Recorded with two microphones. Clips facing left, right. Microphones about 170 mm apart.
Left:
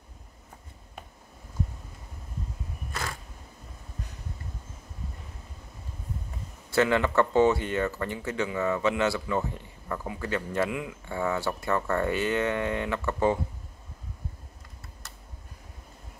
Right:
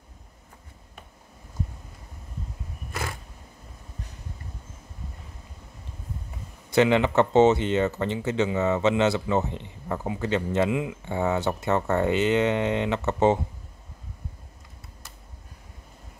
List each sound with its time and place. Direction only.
6.7 s speech: 20° right (ahead or behind)